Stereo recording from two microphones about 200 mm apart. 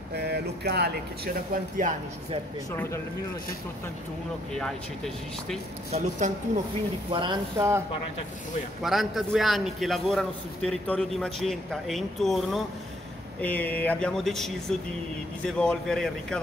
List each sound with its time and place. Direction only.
0.1 s speech: 55° right (ahead or behind)
2.7 s speech: 10° left (ahead or behind)
4.6 s a man's voice: 5° left (ahead or behind)
5.9 s speech: 35° right (ahead or behind)
7.1 s speech: 25° right (ahead or behind)
8.8 s a man's voice: centre (ahead or behind)